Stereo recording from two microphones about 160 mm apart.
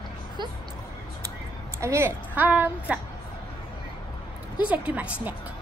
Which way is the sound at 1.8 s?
15° right (ahead or behind).